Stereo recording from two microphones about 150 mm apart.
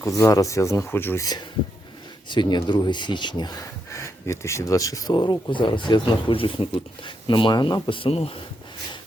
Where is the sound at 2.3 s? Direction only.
30° left (ahead or behind).